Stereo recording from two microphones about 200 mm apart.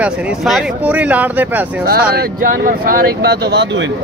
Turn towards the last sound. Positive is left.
turn(degrees=-60)  # may be behind; listen again after turning